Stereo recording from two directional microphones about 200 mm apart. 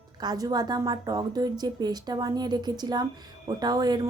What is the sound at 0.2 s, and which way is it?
A woman's voice, 20° right (ahead or behind).